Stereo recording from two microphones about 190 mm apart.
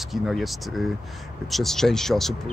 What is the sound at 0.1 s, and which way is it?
Speech, centre (ahead or behind).